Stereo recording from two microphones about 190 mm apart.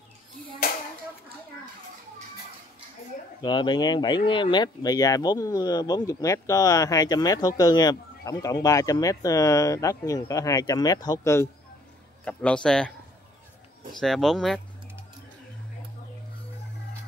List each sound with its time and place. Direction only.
3.4 s speech: 25° left (ahead or behind)
12.3 s speech: 5° left (ahead or behind)
13.9 s speech: centre (ahead or behind)